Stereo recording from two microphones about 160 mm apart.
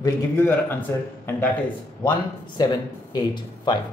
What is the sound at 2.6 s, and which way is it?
Speech, 25° left (ahead or behind).